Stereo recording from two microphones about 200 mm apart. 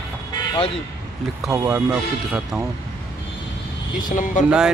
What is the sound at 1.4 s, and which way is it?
Speech, 15° right (ahead or behind).